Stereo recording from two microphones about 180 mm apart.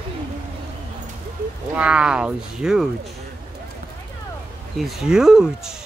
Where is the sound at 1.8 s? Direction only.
5° right (ahead or behind).